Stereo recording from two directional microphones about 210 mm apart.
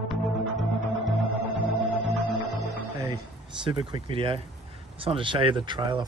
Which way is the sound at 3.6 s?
20° right (ahead or behind).